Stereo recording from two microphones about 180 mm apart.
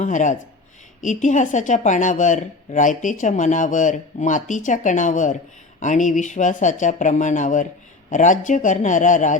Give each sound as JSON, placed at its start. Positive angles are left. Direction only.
{"t": 0.0, "sound": "speech", "side_deg": 45}